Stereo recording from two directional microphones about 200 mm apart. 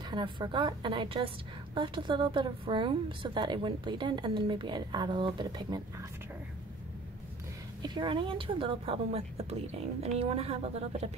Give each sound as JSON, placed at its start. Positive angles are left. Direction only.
{"t": 0.1, "sound": "a woman's voice", "side_deg": -25}
{"t": 7.8, "sound": "a woman's voice", "side_deg": -20}